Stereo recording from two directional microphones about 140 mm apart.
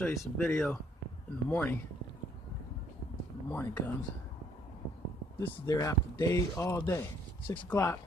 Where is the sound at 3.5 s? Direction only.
15° left (ahead or behind).